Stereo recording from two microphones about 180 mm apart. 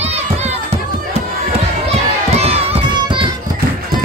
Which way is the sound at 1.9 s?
35° right (ahead or behind).